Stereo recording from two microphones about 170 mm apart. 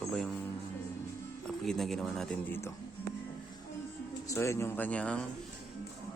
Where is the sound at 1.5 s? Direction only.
Centre (ahead or behind).